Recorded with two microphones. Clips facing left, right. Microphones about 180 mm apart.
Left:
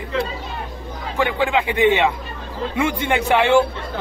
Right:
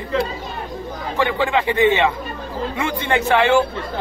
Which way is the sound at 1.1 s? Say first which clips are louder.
Even; 15° left (ahead or behind).